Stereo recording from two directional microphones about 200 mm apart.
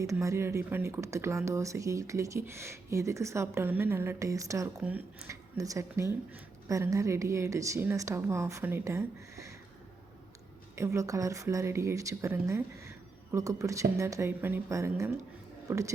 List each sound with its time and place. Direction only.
0.0 s speech: 15° right (ahead or behind)
10.8 s speech: 15° right (ahead or behind)